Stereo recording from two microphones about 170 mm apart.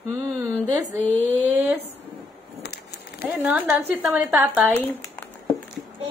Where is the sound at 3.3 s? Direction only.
10° right (ahead or behind).